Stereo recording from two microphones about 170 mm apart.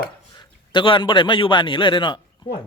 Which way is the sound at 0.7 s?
30° left (ahead or behind).